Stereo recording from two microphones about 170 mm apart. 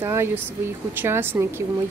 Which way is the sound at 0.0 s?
15° right (ahead or behind).